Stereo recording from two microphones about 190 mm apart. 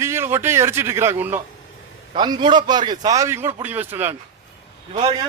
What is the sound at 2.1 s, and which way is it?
A man's voice, 25° right (ahead or behind).